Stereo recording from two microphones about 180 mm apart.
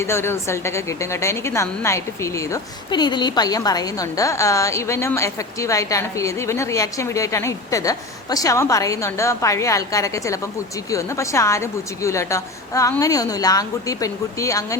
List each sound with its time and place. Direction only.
0.0 s a woman's voice: 15° left (ahead or behind)